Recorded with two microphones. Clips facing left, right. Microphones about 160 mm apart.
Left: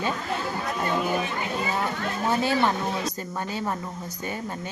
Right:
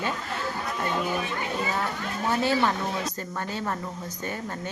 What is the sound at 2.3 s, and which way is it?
A woman's voice, 15° left (ahead or behind).